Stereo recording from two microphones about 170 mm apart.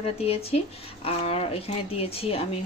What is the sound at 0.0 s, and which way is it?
Speech, 35° left (ahead or behind).